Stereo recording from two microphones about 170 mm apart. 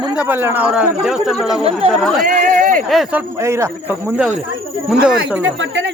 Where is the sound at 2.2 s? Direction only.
55° right (ahead or behind).